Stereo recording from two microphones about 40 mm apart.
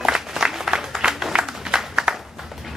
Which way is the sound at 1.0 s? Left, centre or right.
Centre.